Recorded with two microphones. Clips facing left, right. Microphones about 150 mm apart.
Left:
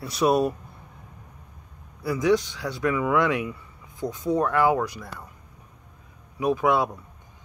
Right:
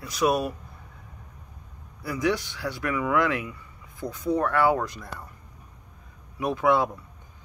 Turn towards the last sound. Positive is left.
turn(degrees=15)  # may be behind; listen again after turning